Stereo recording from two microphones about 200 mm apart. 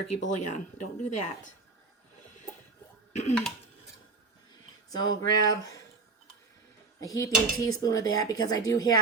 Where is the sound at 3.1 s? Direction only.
35° left (ahead or behind).